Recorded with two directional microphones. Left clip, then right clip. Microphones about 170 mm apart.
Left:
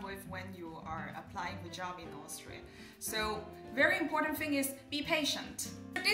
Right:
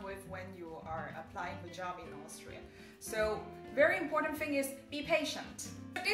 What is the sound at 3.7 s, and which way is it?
A woman's voice, 5° left (ahead or behind).